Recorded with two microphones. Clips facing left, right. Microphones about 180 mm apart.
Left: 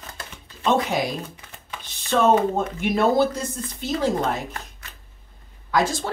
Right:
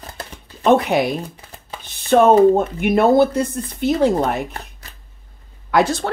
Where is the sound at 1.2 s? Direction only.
35° right (ahead or behind).